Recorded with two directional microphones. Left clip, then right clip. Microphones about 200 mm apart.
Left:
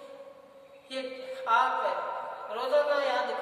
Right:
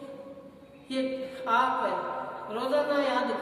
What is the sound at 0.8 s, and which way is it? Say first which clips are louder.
Speech: right 5 dB; 5° right (ahead or behind).